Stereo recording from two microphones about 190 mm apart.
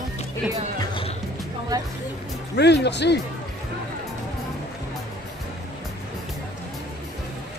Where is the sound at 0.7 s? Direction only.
25° left (ahead or behind).